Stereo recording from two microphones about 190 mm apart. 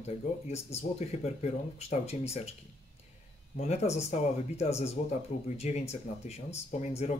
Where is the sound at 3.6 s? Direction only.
35° left (ahead or behind).